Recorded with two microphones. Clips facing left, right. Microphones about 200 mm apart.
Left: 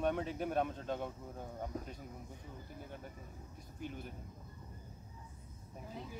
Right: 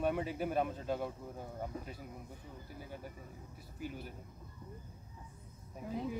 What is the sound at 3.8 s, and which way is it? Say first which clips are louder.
Speech: right 1 dB; 5° right (ahead or behind).